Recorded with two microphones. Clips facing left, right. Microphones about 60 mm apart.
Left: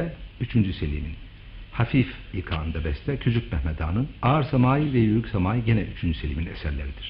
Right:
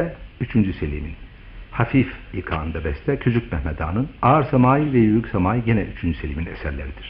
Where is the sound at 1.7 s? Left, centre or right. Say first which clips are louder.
Right 5 dB; right.